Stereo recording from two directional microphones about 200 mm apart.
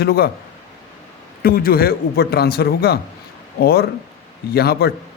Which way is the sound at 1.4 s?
45° left (ahead or behind).